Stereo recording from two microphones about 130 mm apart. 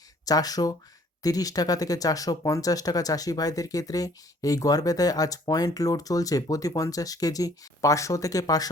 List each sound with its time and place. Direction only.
0.3 s speech: 30° left (ahead or behind)